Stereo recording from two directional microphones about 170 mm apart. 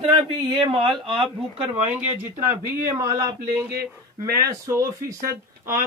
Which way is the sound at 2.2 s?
10° right (ahead or behind).